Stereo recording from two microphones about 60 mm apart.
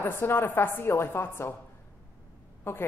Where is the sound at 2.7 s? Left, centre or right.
Left.